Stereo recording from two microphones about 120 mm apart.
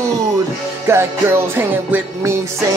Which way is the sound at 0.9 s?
25° right (ahead or behind).